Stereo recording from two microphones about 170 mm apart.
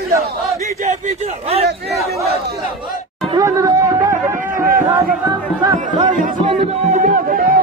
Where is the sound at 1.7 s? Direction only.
70° right (ahead or behind).